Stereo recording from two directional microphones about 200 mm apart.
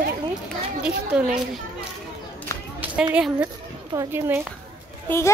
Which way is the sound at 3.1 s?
5° right (ahead or behind).